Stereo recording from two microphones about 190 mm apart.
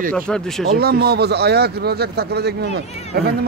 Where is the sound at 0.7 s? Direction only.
55° right (ahead or behind).